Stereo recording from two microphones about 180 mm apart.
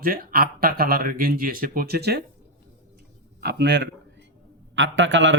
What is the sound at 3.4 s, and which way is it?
Speech, 70° right (ahead or behind).